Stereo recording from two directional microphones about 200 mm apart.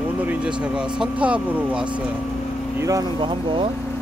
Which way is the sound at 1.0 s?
5° right (ahead or behind).